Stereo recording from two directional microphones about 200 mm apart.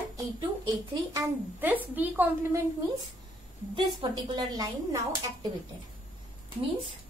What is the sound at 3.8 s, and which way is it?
Speech, 25° right (ahead or behind).